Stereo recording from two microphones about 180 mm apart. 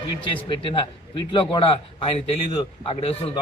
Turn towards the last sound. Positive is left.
turn(degrees=30)  # may be behind; listen again after turning